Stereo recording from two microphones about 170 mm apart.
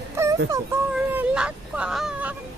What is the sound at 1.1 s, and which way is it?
Speech, 10° right (ahead or behind).